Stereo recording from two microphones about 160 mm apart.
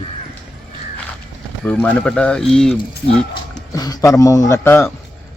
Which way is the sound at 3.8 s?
25° left (ahead or behind).